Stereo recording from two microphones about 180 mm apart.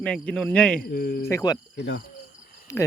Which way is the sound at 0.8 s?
60° left (ahead or behind).